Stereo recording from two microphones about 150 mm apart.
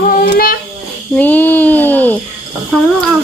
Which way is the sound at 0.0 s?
80° left.